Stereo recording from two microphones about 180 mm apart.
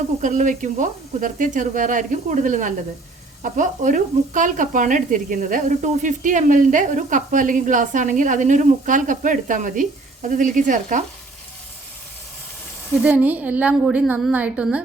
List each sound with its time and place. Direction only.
0.2 s speech: 45° right (ahead or behind)
12.9 s a woman's voice: 5° right (ahead or behind)